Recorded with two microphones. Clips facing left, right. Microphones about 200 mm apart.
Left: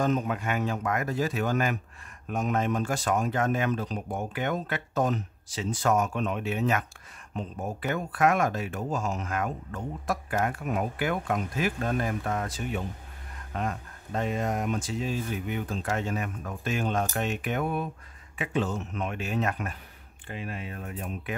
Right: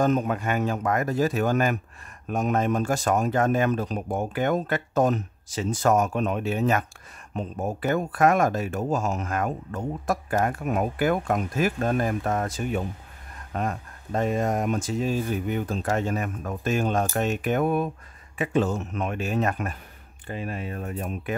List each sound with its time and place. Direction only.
0.0 s speech: 45° right (ahead or behind)